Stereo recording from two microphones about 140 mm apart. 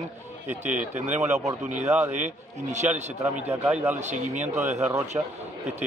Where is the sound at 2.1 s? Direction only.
60° right (ahead or behind).